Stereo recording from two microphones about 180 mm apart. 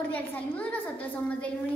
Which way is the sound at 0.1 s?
10° left (ahead or behind).